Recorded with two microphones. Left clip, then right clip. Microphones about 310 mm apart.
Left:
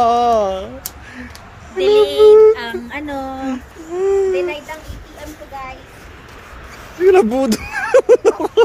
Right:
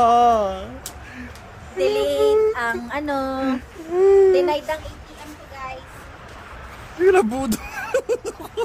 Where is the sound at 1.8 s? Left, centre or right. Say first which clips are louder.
Left 8 dB; centre.